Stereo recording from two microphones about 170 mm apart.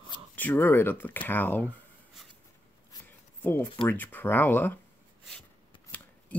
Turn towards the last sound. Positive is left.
turn(degrees=10)  # may be behind; listen again after turning